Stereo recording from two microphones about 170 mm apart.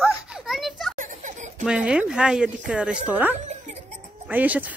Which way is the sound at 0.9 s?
45° right (ahead or behind).